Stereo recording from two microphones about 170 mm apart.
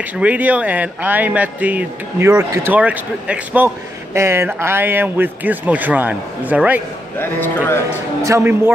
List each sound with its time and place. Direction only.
0.0 s speech: 10° right (ahead or behind)
7.2 s speech: 10° left (ahead or behind)
8.2 s speech: 15° right (ahead or behind)